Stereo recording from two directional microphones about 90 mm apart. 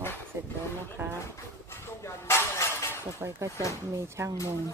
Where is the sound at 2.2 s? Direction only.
30° left (ahead or behind).